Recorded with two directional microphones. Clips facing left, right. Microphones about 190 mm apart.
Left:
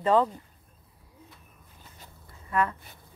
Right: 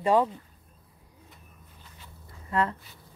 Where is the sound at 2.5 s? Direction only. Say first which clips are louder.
Even; 25° right (ahead or behind).